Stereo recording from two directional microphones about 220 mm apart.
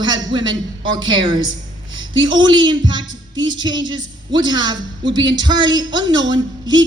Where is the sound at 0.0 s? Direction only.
20° right (ahead or behind).